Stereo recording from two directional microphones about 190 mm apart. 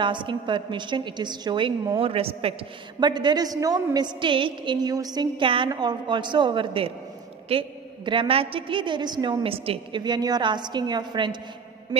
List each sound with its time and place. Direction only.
0.0 s a woman's voice: 25° right (ahead or behind)